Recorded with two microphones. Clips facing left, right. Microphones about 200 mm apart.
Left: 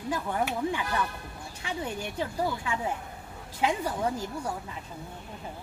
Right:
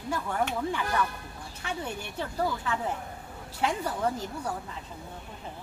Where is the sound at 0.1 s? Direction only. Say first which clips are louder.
Even; 15° left (ahead or behind).